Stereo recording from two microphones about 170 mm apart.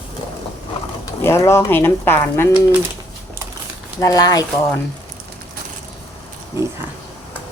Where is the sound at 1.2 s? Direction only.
15° left (ahead or behind).